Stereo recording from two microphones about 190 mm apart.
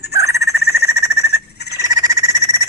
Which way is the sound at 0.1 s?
15° right (ahead or behind).